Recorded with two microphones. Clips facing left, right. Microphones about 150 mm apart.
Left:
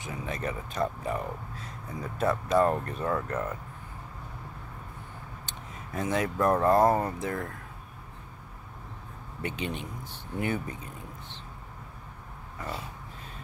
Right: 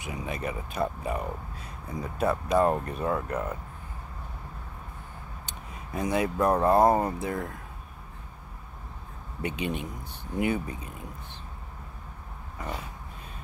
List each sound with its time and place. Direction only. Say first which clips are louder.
0.0 s speech: right 1 dB; 15° right (ahead or behind)
5.5 s a sound: right 2 dB; 15° right (ahead or behind)
6.3 s speech: even; 15° right (ahead or behind)
9.4 s speech: right 3 dB; 15° right (ahead or behind)